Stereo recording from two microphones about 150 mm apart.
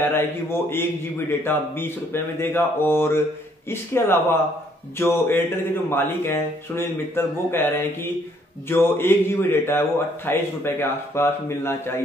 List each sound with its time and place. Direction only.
0.1 s a man's voice: 15° left (ahead or behind)